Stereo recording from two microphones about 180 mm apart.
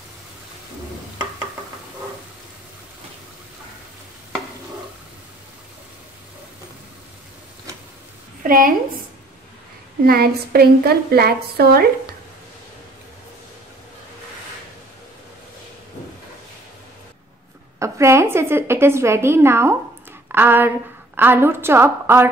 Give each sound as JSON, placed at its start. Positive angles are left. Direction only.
{"t": 8.5, "sound": "a woman's voice", "side_deg": -50}
{"t": 10.0, "sound": "a woman's voice", "side_deg": -60}
{"t": 17.7, "sound": "a woman's voice", "side_deg": -15}